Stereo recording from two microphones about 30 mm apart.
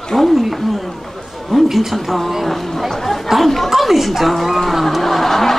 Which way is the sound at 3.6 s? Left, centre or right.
Centre.